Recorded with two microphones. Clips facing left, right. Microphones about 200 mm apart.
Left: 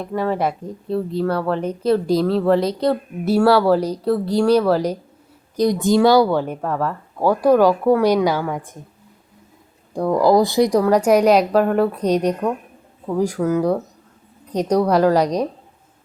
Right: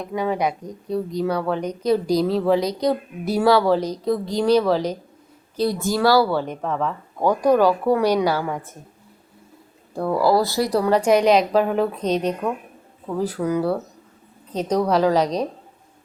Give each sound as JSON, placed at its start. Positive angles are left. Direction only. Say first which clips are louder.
{"t": 0.2, "sound": "speech", "louder": "left 1 dB", "side_deg": 5}
{"t": 10.2, "sound": "speech", "louder": "left 4 dB", "side_deg": 15}
{"t": 10.7, "sound": "speech", "louder": "left 3 dB", "side_deg": -5}
{"t": 10.9, "sound": "speech", "louder": "left 1 dB", "side_deg": 10}